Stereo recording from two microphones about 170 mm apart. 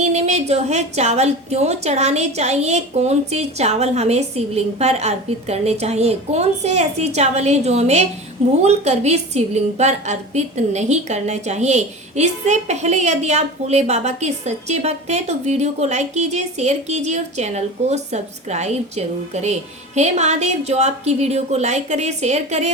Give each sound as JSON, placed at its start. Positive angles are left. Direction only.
{"t": 0.0, "sound": "a woman's voice", "side_deg": -40}